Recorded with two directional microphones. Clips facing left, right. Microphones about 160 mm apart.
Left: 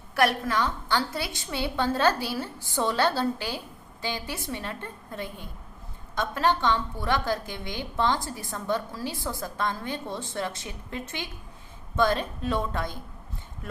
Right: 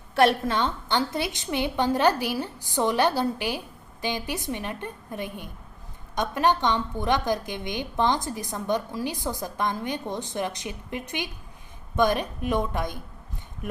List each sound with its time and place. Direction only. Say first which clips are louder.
0.1 s a woman's voice: right 3 dB; 25° right (ahead or behind)